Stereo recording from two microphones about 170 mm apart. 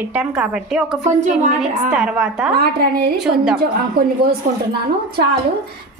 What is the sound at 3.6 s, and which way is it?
Speech, 60° right (ahead or behind).